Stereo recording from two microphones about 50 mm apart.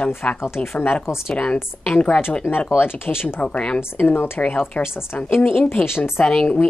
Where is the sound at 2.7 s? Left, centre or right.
Left.